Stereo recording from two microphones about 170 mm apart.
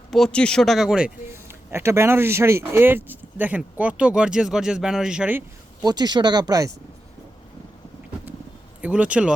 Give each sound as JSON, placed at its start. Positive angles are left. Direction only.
{"t": 0.1, "sound": "speech", "side_deg": 5}
{"t": 5.8, "sound": "speech", "side_deg": -25}
{"t": 8.8, "sound": "speech", "side_deg": -10}